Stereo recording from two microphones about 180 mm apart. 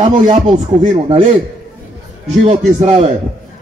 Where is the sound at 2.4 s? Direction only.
35° right (ahead or behind).